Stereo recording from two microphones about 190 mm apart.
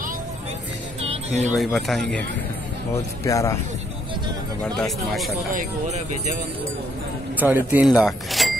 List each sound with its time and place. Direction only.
1.0 s music: 35° right (ahead or behind)
1.5 s speech: centre (ahead or behind)
2.9 s speech: 15° left (ahead or behind)
4.7 s speech: centre (ahead or behind)
5.5 s speech: 40° right (ahead or behind)
7.3 s speech: 10° right (ahead or behind)